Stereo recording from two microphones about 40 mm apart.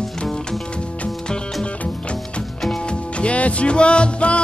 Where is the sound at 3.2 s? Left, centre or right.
Left.